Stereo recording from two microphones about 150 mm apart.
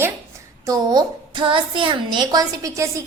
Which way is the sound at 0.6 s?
25° right (ahead or behind).